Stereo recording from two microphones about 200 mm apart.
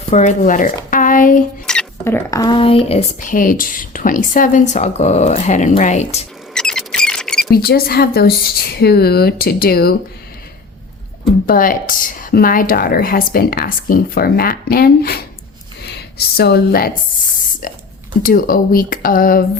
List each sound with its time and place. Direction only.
0.1 s speech: 35° left (ahead or behind)
0.9 s a sound: 40° left (ahead or behind)
1.6 s speech: 5° left (ahead or behind); by 6.2 s 35° left (ahead or behind)
6.5 s a sound: 5° left (ahead or behind)
7.5 s speech: 50° left (ahead or behind)
11.4 s speech: 45° left (ahead or behind)
18.2 s speech: 45° left (ahead or behind)